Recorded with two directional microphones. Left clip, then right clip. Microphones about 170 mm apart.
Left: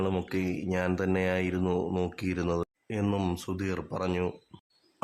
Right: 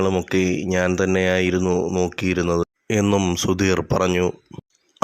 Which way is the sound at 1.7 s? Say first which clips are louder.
Right 9 dB; 10° right (ahead or behind).